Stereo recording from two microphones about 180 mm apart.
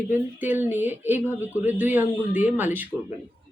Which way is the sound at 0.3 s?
10° right (ahead or behind).